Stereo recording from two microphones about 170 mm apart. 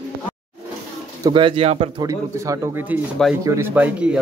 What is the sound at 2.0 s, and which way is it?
Speech, 20° right (ahead or behind).